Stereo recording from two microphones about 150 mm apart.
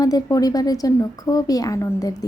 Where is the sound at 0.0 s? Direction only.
25° left (ahead or behind).